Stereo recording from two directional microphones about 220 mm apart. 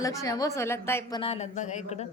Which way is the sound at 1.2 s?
30° left (ahead or behind).